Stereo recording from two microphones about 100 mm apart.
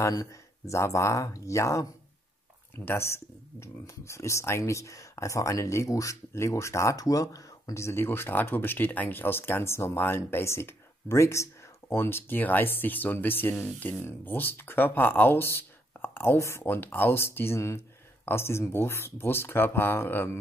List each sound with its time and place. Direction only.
0.0 s speech: 30° left (ahead or behind)